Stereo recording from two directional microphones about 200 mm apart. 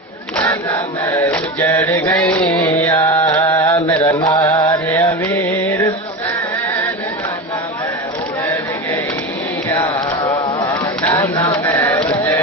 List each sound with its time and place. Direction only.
0.4 s music: 10° left (ahead or behind)
2.6 s mantra: 10° left (ahead or behind)
3.3 s chant: 15° left (ahead or behind)
3.9 s mantra: 10° left (ahead or behind)
4.6 s chant: 20° left (ahead or behind)
4.8 s music: 15° left (ahead or behind)
10.7 s a sound: 15° left (ahead or behind)